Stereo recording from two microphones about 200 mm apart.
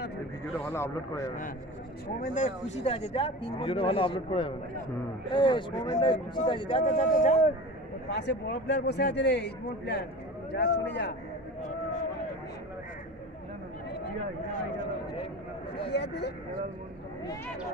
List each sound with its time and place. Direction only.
0.7 s speech: 10° left (ahead or behind)
2.0 s speech: 45° left (ahead or behind); by 6.9 s 25° left (ahead or behind)
6.9 s speech: 35° left (ahead or behind)
8.1 s a man's voice: 55° left (ahead or behind)
15.9 s speech: 55° left (ahead or behind)